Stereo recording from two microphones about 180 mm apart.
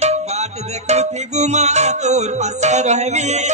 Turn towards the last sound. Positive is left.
turn(degrees=-40)  # may be behind; listen again after turning